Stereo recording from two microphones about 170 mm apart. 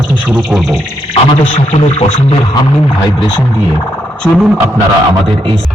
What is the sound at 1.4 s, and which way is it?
Speech, 35° left (ahead or behind).